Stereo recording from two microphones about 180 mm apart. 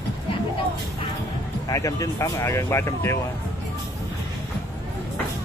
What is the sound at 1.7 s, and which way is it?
Speech, 15° left (ahead or behind).